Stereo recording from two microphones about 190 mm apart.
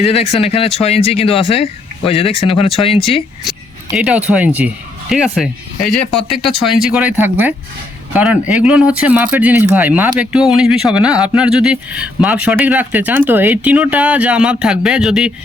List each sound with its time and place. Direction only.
0.0 s speech: 30° left (ahead or behind)
3.9 s speech: 5° right (ahead or behind)